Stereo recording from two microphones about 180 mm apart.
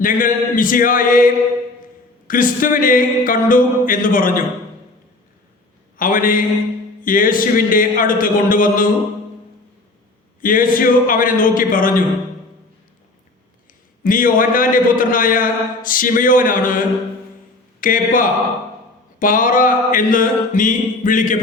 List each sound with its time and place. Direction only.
0.0 s a man's voice: 50° left (ahead or behind)
6.0 s a man's voice: 50° left (ahead or behind)
10.4 s a man's voice: 50° left (ahead or behind)
14.0 s a man's voice: 50° left (ahead or behind)